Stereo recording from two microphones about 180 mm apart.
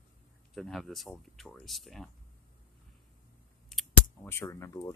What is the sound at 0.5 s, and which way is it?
Speech, centre (ahead or behind).